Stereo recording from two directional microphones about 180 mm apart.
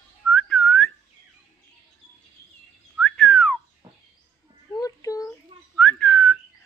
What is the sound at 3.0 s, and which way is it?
Whistling, 5° left (ahead or behind).